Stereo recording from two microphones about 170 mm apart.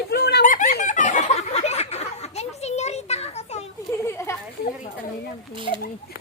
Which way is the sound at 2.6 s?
40° left (ahead or behind).